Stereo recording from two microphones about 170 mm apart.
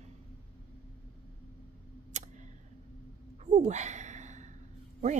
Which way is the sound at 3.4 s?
45° right (ahead or behind).